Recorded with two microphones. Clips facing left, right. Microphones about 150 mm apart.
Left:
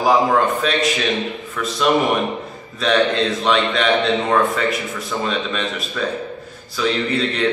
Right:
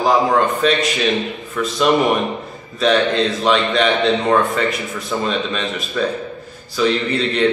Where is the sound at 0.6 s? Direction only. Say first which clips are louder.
Right 2 dB; centre (ahead or behind).